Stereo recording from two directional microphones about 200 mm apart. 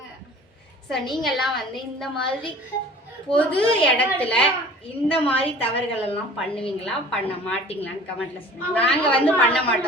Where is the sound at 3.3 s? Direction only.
5° left (ahead or behind).